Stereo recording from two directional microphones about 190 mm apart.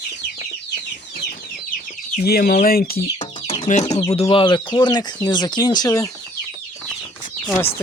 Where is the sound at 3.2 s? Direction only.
25° left (ahead or behind).